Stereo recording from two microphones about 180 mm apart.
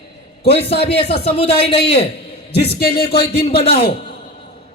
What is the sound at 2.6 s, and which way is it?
Speech, 60° left (ahead or behind).